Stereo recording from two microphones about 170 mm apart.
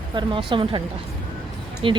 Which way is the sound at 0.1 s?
30° right (ahead or behind).